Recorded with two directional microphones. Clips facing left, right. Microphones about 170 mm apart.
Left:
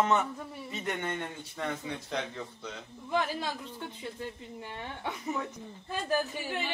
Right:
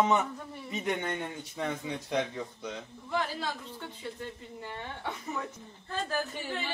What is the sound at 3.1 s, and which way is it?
Speech, 15° left (ahead or behind).